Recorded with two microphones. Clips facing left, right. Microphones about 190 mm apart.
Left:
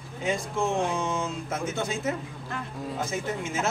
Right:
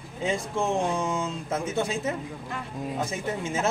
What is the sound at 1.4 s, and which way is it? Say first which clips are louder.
Speech: right 2 dB; 30° right (ahead or behind).